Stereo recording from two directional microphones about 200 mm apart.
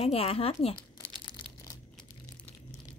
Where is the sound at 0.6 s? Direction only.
25° left (ahead or behind).